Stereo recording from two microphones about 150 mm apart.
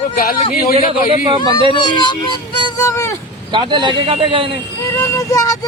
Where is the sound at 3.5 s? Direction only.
30° right (ahead or behind).